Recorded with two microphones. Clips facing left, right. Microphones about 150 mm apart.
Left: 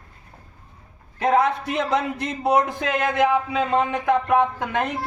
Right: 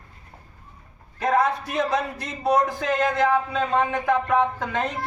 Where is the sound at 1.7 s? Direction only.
20° left (ahead or behind).